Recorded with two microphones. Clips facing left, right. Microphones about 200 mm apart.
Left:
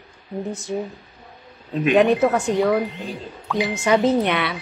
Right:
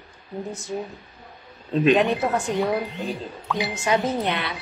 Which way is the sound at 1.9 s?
65° left (ahead or behind).